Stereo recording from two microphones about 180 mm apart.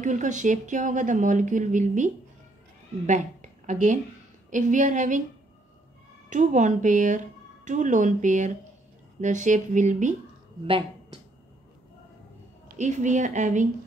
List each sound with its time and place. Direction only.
0.0 s speech: 40° right (ahead or behind)
3.1 s a woman's voice: 40° right (ahead or behind)
6.3 s speech: 45° right (ahead or behind)
12.7 s speech: 40° right (ahead or behind)